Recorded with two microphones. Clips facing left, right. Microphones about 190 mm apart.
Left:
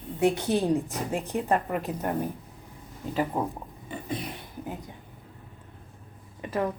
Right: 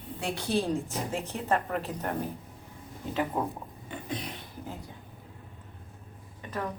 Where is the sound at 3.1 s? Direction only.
5° left (ahead or behind).